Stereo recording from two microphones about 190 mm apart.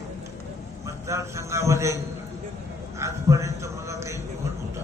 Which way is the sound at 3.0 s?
15° right (ahead or behind).